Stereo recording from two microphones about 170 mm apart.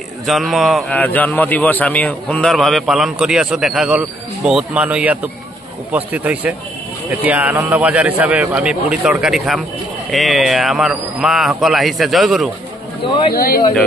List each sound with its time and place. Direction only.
0.3 s a man's voice: centre (ahead or behind)
13.0 s speech: 30° left (ahead or behind)
13.3 s speech: 60° left (ahead or behind)